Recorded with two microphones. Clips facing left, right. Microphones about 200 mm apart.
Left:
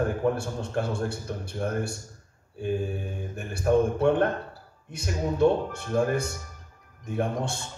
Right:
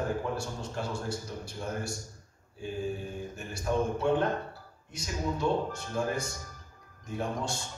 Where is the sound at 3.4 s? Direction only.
55° left (ahead or behind).